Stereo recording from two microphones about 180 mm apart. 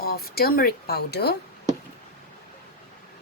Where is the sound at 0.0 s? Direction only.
55° left (ahead or behind).